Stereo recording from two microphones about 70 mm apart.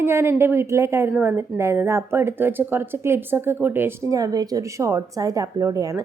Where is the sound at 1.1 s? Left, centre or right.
Right.